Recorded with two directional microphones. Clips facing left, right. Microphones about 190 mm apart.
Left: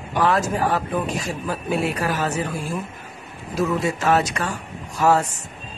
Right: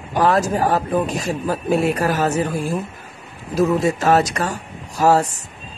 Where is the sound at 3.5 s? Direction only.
40° right (ahead or behind).